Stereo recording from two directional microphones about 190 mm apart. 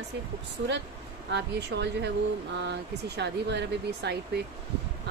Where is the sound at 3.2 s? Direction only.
65° right (ahead or behind).